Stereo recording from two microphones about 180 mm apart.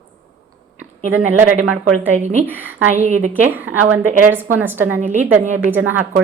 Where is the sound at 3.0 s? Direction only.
40° right (ahead or behind).